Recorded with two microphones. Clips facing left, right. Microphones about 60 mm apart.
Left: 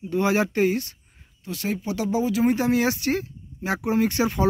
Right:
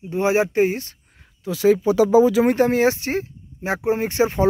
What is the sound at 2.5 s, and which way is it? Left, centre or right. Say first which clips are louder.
Speech: right 4 dB; right.